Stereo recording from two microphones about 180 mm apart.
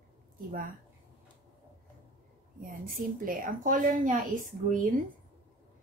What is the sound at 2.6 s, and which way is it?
A woman's voice, 50° right (ahead or behind).